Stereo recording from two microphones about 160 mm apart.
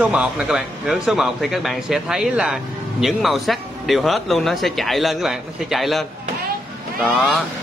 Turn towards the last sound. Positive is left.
turn(degrees=0)  # may be behind; listen again after turning